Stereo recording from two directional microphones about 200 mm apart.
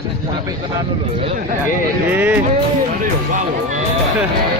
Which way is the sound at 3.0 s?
40° right (ahead or behind).